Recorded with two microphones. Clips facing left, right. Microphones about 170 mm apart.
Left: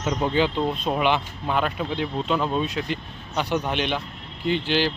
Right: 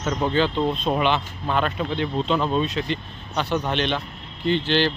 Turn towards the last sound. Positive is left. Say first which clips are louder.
# right 2 dB
turn(degrees=10)  # may be behind; listen again after turning